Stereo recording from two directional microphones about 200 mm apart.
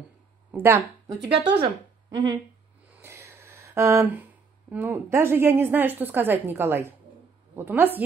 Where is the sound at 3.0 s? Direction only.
15° right (ahead or behind).